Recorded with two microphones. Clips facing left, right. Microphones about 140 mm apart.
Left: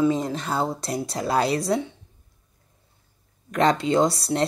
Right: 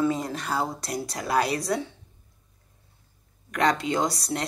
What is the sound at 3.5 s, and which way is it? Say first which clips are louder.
Speech: left 4 dB; 25° left (ahead or behind).